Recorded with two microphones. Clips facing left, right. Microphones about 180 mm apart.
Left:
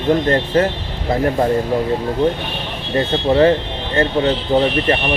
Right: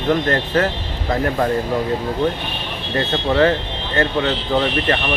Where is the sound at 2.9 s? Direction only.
20° left (ahead or behind).